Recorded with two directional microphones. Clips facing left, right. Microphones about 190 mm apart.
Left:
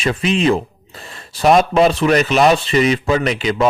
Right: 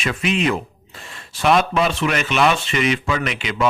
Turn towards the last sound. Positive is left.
turn(degrees=35)  # may be behind; listen again after turning